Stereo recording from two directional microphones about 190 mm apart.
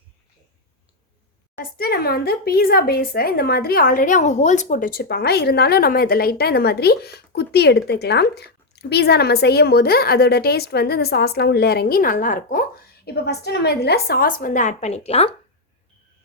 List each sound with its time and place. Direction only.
1.5 s speech: 50° left (ahead or behind); by 15.3 s 35° left (ahead or behind)